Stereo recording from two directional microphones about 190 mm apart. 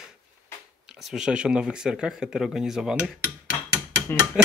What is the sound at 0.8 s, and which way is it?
Speech, centre (ahead or behind).